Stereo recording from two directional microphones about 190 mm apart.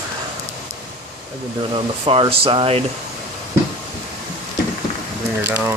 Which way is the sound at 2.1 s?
30° right (ahead or behind).